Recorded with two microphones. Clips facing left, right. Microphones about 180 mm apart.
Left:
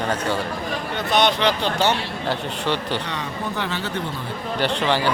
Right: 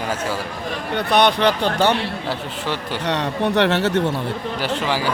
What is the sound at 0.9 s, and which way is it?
Speech, 60° right (ahead or behind).